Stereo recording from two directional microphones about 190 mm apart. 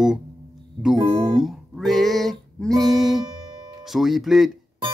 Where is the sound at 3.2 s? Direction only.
25° right (ahead or behind).